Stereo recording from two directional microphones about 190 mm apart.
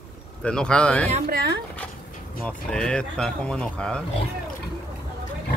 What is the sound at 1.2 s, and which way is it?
Speech, 60° right (ahead or behind).